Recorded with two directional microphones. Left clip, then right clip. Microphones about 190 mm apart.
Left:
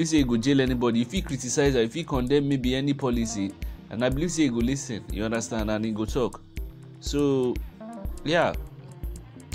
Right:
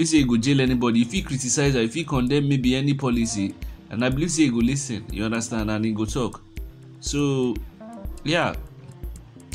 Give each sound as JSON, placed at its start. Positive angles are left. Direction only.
{"t": 0.0, "sound": "speech", "side_deg": 15}
{"t": 7.5, "sound": "music", "side_deg": 0}
{"t": 8.2, "sound": "speech", "side_deg": 20}